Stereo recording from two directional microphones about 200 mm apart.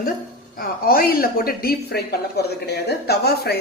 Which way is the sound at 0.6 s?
45° left (ahead or behind).